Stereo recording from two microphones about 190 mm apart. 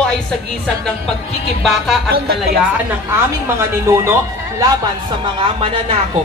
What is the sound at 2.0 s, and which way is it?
Speech, 55° right (ahead or behind).